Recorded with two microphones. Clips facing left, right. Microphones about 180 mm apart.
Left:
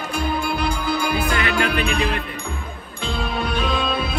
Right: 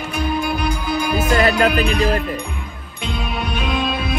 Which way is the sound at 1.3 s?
40° right (ahead or behind).